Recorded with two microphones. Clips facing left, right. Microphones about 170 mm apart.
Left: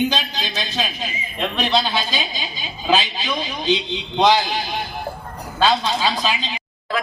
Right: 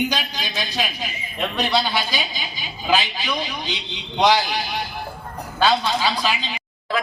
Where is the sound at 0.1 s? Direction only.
25° left (ahead or behind).